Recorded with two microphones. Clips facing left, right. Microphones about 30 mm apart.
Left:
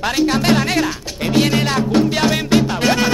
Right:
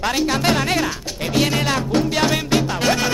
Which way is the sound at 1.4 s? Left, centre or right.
Centre.